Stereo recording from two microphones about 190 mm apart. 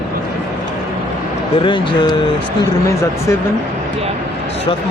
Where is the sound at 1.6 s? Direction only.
25° left (ahead or behind).